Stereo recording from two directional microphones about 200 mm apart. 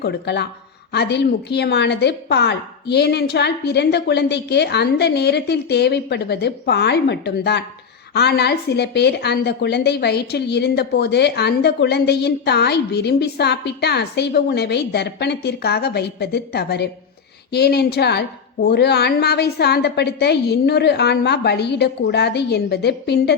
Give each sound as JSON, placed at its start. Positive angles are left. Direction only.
{"t": 0.0, "sound": "a woman's voice", "side_deg": 55}